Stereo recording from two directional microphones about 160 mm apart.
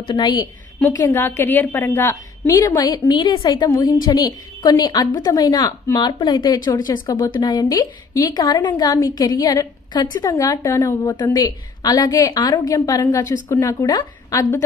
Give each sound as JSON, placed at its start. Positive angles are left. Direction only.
{"t": 0.0, "sound": "a woman's voice", "side_deg": 25}